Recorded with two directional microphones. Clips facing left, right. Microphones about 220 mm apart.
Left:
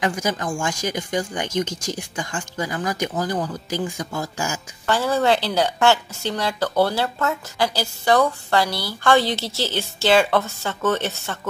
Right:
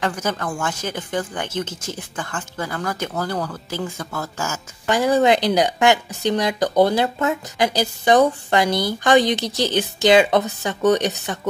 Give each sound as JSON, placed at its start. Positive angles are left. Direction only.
{"t": 0.0, "sound": "speech", "side_deg": 10}
{"t": 4.8, "sound": "a woman's voice", "side_deg": -15}